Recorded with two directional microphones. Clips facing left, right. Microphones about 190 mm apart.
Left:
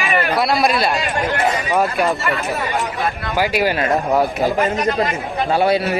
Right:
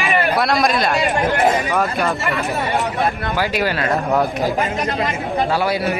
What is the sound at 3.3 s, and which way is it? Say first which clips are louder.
Speech: left 6 dB; 15° left (ahead or behind).